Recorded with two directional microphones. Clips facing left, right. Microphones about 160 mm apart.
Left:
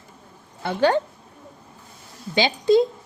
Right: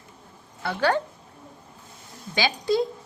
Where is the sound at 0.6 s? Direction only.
20° left (ahead or behind).